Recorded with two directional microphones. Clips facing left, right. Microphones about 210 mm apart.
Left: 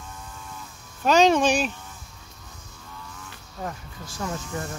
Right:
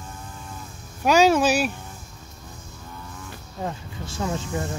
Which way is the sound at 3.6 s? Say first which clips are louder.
Right 3 dB; 25° right (ahead or behind).